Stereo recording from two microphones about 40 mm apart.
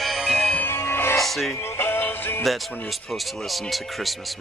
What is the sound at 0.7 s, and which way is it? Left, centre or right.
Music, left.